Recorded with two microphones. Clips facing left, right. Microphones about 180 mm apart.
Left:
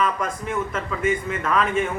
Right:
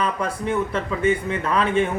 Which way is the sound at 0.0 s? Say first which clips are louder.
Even; 35° right (ahead or behind).